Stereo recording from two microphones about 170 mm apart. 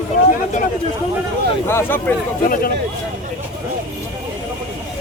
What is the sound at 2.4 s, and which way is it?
Speech, 55° left (ahead or behind).